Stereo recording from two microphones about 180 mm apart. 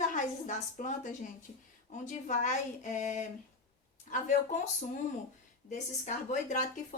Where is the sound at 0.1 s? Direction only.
45° left (ahead or behind).